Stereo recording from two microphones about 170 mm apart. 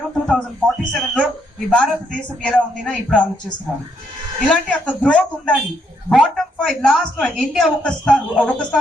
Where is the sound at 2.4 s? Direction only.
5° left (ahead or behind).